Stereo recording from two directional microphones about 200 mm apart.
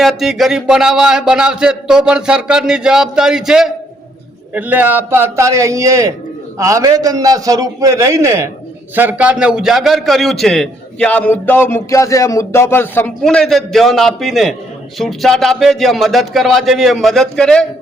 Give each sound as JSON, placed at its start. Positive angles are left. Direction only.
{"t": 0.0, "sound": "a man's voice", "side_deg": 0}